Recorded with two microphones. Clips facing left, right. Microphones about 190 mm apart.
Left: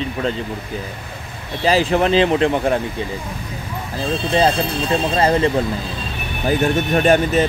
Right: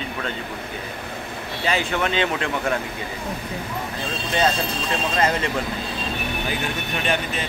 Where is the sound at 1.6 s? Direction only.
35° left (ahead or behind).